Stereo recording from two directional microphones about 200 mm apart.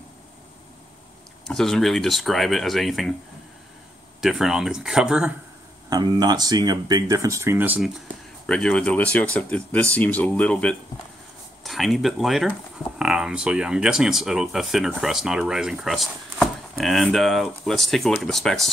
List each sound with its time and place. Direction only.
1.5 s speech: centre (ahead or behind)
4.2 s speech: centre (ahead or behind)
5.9 s speech: 20° right (ahead or behind)
8.5 s speech: 5° left (ahead or behind)